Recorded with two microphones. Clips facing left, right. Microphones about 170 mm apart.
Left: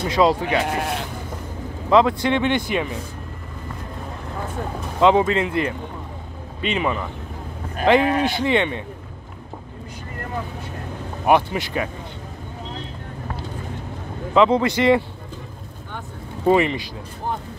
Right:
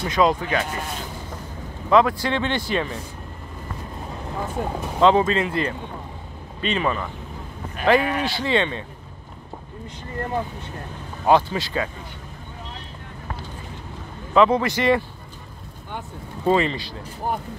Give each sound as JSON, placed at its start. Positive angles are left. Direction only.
{"t": 0.1, "sound": "speech", "side_deg": 30}
{"t": 0.7, "sound": "speech", "side_deg": 65}
{"t": 1.9, "sound": "speech", "side_deg": 20}
{"t": 5.0, "sound": "speech", "side_deg": 15}
{"t": 7.8, "sound": "speech", "side_deg": 25}
{"t": 11.2, "sound": "speech", "side_deg": 20}
{"t": 14.3, "sound": "speech", "side_deg": 20}
{"t": 16.4, "sound": "speech", "side_deg": 20}